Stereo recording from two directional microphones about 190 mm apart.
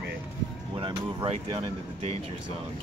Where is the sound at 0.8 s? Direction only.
25° right (ahead or behind).